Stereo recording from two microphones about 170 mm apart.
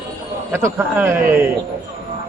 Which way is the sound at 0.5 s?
15° right (ahead or behind).